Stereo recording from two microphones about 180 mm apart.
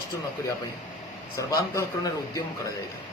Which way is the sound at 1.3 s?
20° left (ahead or behind).